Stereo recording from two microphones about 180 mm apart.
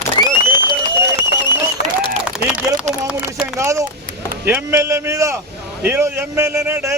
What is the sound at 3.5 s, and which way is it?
A man's voice, 15° right (ahead or behind).